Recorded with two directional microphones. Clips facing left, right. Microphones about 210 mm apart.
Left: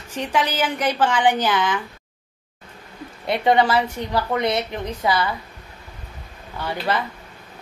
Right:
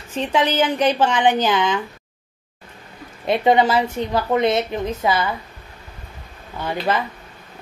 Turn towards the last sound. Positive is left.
turn(degrees=-20)  # may be behind; listen again after turning